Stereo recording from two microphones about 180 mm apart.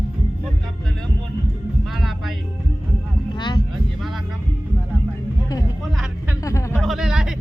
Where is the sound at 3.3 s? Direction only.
25° left (ahead or behind).